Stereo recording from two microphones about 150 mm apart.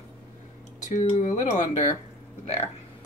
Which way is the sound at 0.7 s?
55° left (ahead or behind).